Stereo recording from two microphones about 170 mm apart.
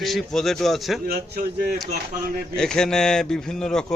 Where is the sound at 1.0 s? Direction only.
60° right (ahead or behind).